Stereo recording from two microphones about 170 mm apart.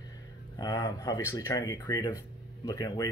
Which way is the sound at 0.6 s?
20° left (ahead or behind).